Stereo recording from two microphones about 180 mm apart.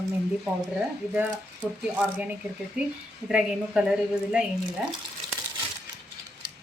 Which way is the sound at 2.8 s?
5° right (ahead or behind).